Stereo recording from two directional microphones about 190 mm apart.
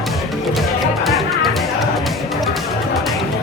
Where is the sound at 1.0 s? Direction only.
Centre (ahead or behind).